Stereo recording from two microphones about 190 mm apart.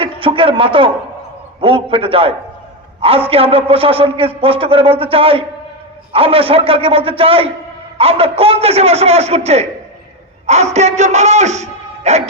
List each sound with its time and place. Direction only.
0.0 s a man's voice: 30° right (ahead or behind)